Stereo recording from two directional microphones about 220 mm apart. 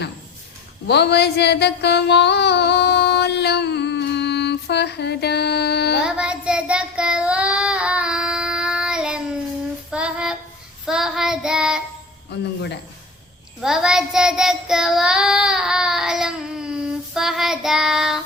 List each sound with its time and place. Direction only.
0.9 s a sound: 50° left (ahead or behind)
6.0 s child singing: 5° right (ahead or behind)
12.3 s speech: 50° left (ahead or behind)
13.6 s child singing: centre (ahead or behind)